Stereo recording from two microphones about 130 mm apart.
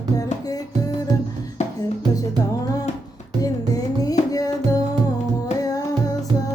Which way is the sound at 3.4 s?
30° left (ahead or behind).